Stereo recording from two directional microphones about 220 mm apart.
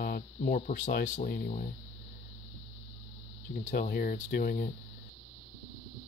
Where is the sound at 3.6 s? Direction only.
40° left (ahead or behind).